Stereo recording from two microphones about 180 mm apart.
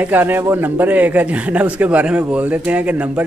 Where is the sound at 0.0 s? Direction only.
10° right (ahead or behind).